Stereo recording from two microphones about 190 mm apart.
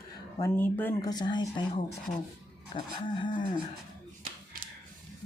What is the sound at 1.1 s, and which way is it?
Speech, 20° left (ahead or behind).